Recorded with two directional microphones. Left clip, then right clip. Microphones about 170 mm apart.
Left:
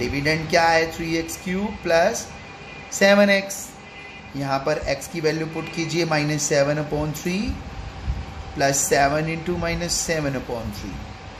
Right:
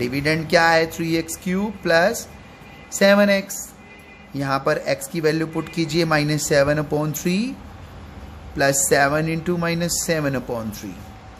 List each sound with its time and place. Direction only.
0.0 s a woman's voice: 45° right (ahead or behind)
4.4 s speech: 50° right (ahead or behind)
8.5 s speech: 45° right (ahead or behind)